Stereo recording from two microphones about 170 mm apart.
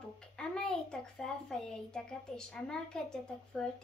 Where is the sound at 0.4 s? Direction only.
5° left (ahead or behind).